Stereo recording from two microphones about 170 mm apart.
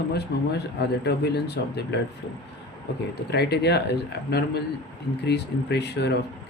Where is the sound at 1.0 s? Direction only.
75° left (ahead or behind).